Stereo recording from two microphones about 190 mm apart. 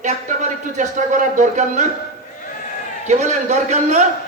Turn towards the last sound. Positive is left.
turn(degrees=-40)  # may be behind; listen again after turning